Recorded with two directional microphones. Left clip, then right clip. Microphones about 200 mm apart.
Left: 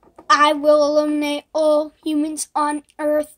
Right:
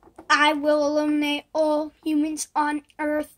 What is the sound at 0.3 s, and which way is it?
Child singing, 30° left (ahead or behind).